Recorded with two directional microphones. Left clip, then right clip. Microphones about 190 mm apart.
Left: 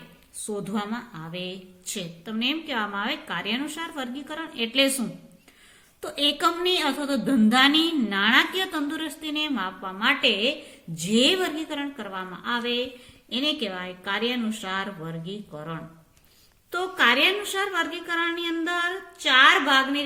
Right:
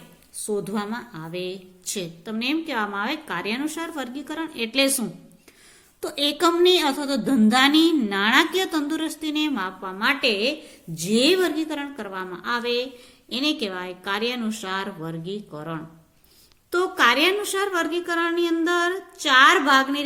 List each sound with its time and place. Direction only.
0.7 s a woman's voice: 40° right (ahead or behind)